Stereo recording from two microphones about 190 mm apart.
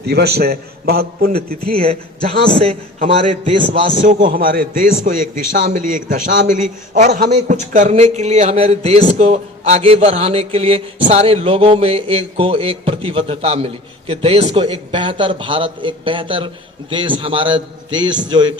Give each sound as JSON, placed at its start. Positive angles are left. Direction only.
{"t": 0.1, "sound": "a man's voice", "side_deg": -55}
{"t": 1.8, "sound": "a man's voice", "side_deg": -30}
{"t": 4.0, "sound": "a man's voice", "side_deg": -45}